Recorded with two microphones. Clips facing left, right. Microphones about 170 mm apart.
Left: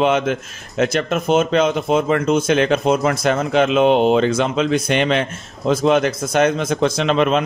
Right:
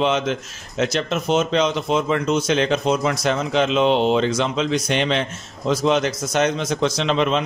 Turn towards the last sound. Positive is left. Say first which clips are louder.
# left 3 dB
turn(degrees=55)  # may be behind; listen again after turning